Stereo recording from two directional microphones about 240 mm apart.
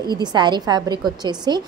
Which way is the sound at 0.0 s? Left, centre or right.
Centre.